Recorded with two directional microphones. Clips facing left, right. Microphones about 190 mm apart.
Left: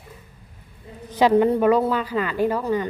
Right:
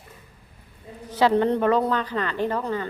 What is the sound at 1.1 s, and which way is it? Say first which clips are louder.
A woman's voice: left 3 dB; 15° left (ahead or behind).